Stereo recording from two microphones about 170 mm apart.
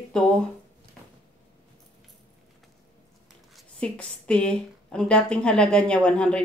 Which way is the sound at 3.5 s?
5° left (ahead or behind).